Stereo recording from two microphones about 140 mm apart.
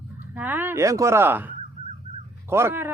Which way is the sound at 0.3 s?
15° right (ahead or behind).